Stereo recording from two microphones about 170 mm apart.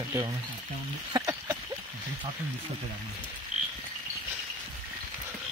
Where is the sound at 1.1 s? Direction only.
20° right (ahead or behind).